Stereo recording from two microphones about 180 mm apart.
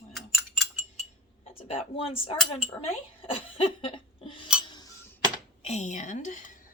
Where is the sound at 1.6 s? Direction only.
30° left (ahead or behind).